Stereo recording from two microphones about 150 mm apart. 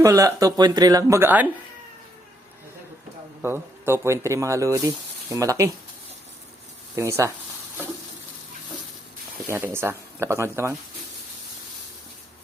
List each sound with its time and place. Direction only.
0.0 s speech: 20° right (ahead or behind)
3.4 s speech: 15° right (ahead or behind)
6.9 s speech: 20° right (ahead or behind)
9.5 s speech: 15° right (ahead or behind)